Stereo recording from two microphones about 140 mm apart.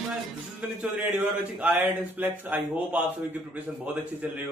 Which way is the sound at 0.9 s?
10° right (ahead or behind).